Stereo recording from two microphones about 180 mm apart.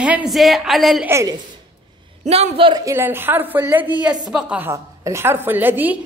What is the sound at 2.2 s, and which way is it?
Speech, 35° right (ahead or behind).